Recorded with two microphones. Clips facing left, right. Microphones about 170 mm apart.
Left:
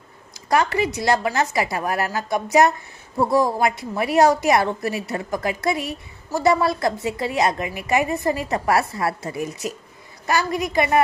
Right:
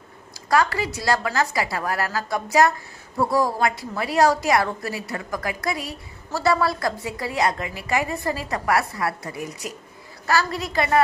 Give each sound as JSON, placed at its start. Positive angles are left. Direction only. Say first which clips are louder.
{"t": 0.5, "sound": "a woman's voice", "louder": "left 1 dB", "side_deg": 20}